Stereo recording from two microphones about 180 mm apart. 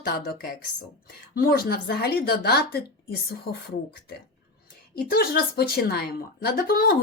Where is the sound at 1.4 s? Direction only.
55° left (ahead or behind).